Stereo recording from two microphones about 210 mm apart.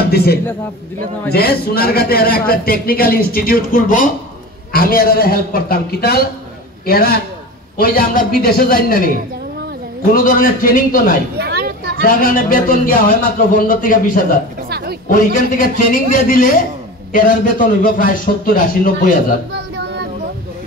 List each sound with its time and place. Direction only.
0.0 s a man's voice: 50° left (ahead or behind)
10.1 s speech: 40° left (ahead or behind)
11.3 s a sound: 50° right (ahead or behind)
12.0 s speech: 40° left (ahead or behind)
19.5 s child singing: 55° right (ahead or behind)